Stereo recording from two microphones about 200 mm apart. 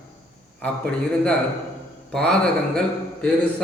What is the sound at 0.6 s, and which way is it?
A man's voice, 5° left (ahead or behind).